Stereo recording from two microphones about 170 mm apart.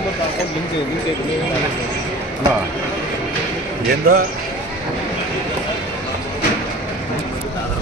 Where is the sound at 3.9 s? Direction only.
60° right (ahead or behind).